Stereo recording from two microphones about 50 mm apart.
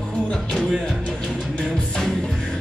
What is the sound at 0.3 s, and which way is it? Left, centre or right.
Music, centre.